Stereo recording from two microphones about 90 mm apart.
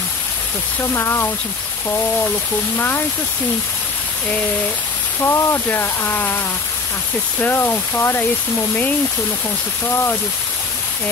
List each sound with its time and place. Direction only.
0.9 s speech: 30° left (ahead or behind)
5.2 s speech: 30° left (ahead or behind)
9.8 s speech: 25° left (ahead or behind)